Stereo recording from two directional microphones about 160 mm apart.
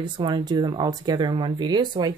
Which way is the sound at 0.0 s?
30° right (ahead or behind).